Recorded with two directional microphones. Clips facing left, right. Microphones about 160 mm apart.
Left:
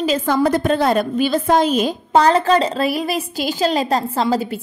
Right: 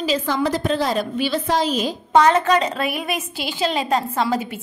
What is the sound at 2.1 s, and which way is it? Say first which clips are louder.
A woman's voice: left 1 dB; 35° left (ahead or behind).